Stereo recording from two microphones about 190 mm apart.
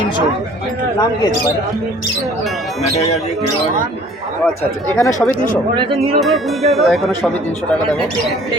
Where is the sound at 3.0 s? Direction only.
35° left (ahead or behind).